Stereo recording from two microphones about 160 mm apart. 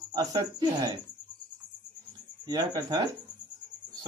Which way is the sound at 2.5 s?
25° right (ahead or behind).